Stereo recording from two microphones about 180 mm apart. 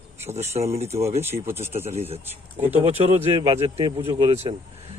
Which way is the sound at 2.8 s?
30° right (ahead or behind).